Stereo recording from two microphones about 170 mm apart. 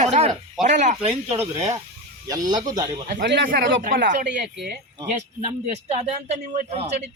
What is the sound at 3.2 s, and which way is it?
Speech, 90° right.